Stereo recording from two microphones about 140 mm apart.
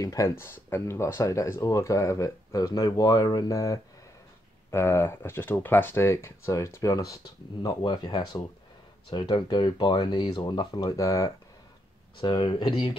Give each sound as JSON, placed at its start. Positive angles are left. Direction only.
{"t": 0.0, "sound": "speech", "side_deg": 25}